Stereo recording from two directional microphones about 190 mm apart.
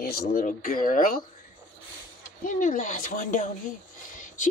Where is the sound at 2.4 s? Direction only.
45° left (ahead or behind).